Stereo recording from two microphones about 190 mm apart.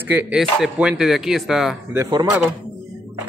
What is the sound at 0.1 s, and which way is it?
Speech, 5° right (ahead or behind).